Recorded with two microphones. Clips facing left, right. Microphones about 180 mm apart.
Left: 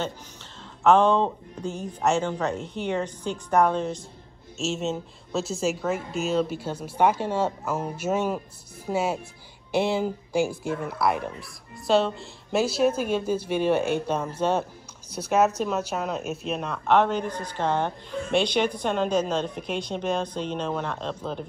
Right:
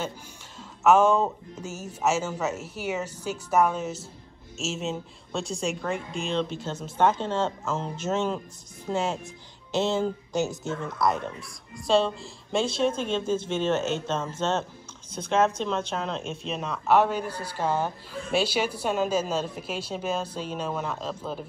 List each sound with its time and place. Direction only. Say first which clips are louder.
0.8 s speech: left 1 dB; 10° right (ahead or behind)